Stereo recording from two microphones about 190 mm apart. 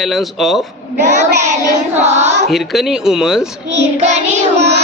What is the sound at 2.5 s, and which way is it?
Speech, centre (ahead or behind).